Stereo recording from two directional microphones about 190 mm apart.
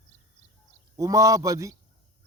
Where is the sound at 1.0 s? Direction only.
15° right (ahead or behind).